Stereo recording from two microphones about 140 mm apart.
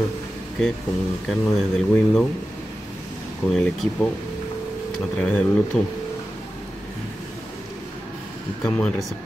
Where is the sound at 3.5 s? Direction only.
Centre (ahead or behind).